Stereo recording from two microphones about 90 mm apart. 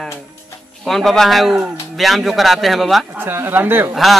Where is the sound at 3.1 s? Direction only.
25° right (ahead or behind).